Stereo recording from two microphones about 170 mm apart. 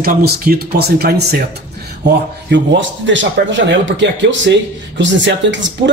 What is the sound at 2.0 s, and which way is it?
Speech, 90° right.